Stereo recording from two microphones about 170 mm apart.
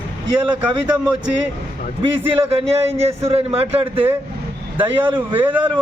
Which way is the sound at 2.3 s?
35° right (ahead or behind).